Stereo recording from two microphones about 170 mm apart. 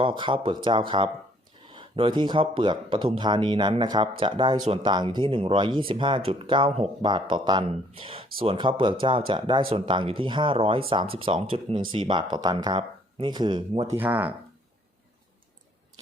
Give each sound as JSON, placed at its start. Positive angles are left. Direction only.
{"t": 0.0, "sound": "speech", "side_deg": -30}
{"t": 14.0, "sound": "speech", "side_deg": -10}